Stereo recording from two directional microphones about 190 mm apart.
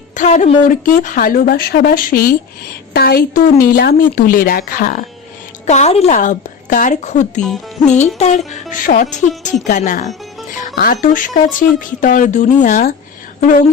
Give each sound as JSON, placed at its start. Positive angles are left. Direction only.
{"t": 0.1, "sound": "a woman's voice", "side_deg": 40}
{"t": 5.6, "sound": "a woman's voice", "side_deg": 35}
{"t": 11.6, "sound": "speech", "side_deg": 10}
{"t": 11.9, "sound": "a woman's voice", "side_deg": 45}